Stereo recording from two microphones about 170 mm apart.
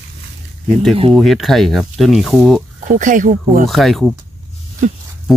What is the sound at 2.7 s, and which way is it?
Speech, 50° right (ahead or behind).